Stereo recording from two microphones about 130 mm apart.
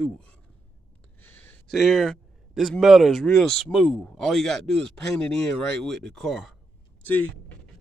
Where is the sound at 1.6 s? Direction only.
Centre (ahead or behind).